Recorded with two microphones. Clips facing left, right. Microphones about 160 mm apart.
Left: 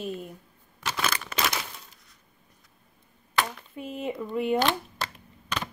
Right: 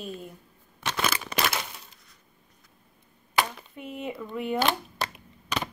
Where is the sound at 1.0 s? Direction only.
10° right (ahead or behind).